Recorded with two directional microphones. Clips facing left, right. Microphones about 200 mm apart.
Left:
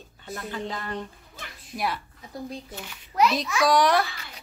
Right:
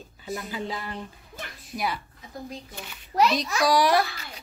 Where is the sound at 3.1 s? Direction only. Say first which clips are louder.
Even; 35° right (ahead or behind).